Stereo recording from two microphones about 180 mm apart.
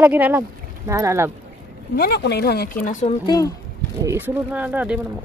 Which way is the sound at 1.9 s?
65° left (ahead or behind).